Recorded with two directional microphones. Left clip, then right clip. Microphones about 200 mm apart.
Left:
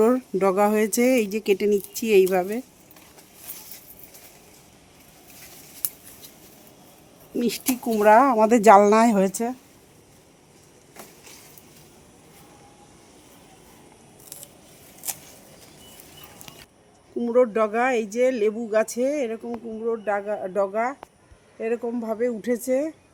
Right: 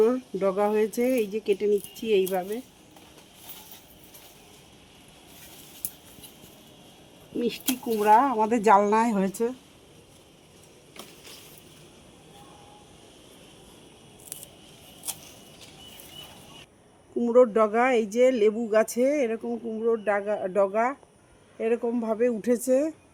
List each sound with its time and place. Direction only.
0.0 s speech: 60° left (ahead or behind)
7.3 s speech: 55° left (ahead or behind)
17.2 s a sound: 5° left (ahead or behind)
17.5 s speech: 10° right (ahead or behind)